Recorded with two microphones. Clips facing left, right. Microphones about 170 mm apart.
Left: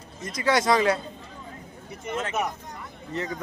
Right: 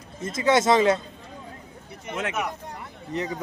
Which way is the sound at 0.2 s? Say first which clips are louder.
Right 3 dB; 25° right (ahead or behind).